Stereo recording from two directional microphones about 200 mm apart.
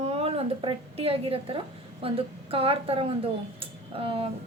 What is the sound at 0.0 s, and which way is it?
A woman's voice, 30° right (ahead or behind).